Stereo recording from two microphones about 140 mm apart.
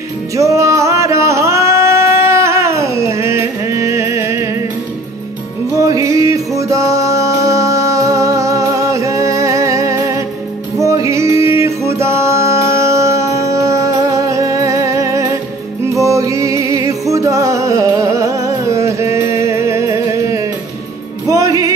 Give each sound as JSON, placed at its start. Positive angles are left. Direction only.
{"t": 0.4, "sound": "singing", "side_deg": -20}
{"t": 5.8, "sound": "music", "side_deg": -25}